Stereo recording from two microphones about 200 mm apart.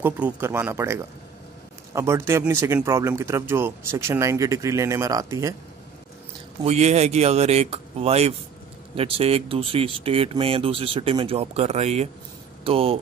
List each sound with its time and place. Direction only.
0.0 s speech: 10° right (ahead or behind)
6.6 s speech: 35° right (ahead or behind)